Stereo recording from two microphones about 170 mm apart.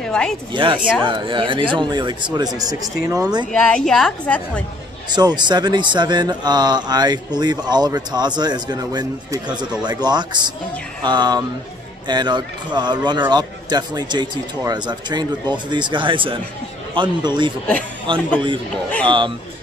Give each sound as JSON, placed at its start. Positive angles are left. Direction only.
{"t": 0.0, "sound": "speech", "side_deg": 5}
{"t": 0.5, "sound": "speech", "side_deg": -30}
{"t": 3.5, "sound": "a woman's voice", "side_deg": 5}
{"t": 5.1, "sound": "speech", "side_deg": -25}